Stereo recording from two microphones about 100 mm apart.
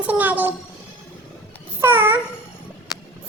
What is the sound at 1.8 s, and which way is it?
Babbling, 20° right (ahead or behind).